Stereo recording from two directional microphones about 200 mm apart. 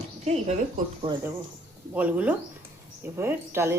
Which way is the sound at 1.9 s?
10° right (ahead or behind).